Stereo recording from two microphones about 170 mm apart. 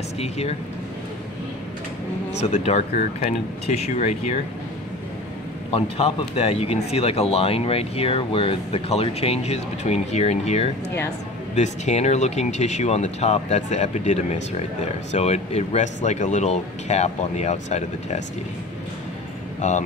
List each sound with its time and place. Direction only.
0.2 s speech: 40° left (ahead or behind)
2.4 s speech: 40° left (ahead or behind)
5.7 s speech: 35° left (ahead or behind)
19.6 s speech: 45° left (ahead or behind)